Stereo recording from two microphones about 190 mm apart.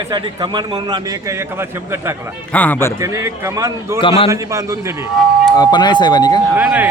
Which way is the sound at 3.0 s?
15° right (ahead or behind).